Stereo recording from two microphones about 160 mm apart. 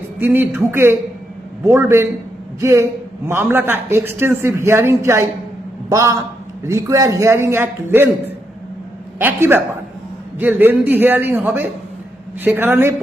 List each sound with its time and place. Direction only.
0.2 s a man's voice: 10° right (ahead or behind)